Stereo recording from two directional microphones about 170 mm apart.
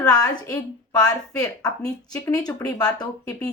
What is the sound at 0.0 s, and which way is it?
A woman's voice, 20° left (ahead or behind).